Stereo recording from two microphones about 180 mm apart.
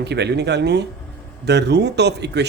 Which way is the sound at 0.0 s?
70° right (ahead or behind).